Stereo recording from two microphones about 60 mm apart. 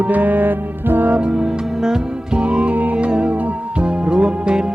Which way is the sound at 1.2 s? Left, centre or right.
Centre.